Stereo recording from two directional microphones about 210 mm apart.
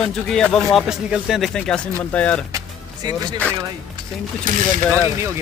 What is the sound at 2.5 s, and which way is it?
Music, 20° right (ahead or behind).